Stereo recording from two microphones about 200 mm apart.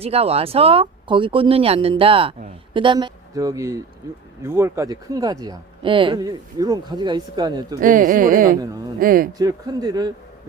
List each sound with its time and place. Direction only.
0.0 s speech: 30° right (ahead or behind)
7.8 s speech: 40° right (ahead or behind)
9.4 s speech: 20° right (ahead or behind)